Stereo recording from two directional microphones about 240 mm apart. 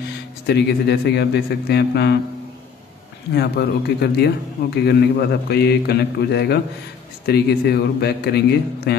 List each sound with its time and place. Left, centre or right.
0.5 s a man's voice: left
3.3 s a man's voice: left